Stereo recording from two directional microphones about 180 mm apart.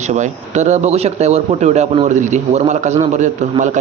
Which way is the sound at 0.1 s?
40° right (ahead or behind).